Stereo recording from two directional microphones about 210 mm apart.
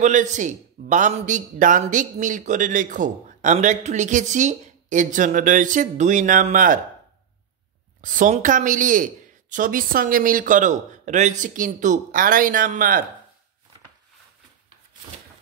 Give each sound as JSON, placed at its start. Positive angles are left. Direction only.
{"t": 0.0, "sound": "a man's voice", "side_deg": -35}
{"t": 8.0, "sound": "a man's voice", "side_deg": -40}